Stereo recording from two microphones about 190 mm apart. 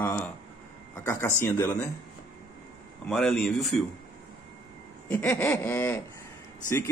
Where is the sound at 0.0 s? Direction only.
10° left (ahead or behind).